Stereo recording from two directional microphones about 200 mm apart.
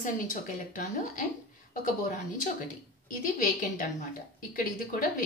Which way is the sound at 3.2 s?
40° left (ahead or behind).